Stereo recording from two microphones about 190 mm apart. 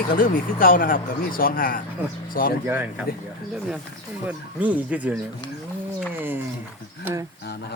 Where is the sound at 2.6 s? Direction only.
10° right (ahead or behind).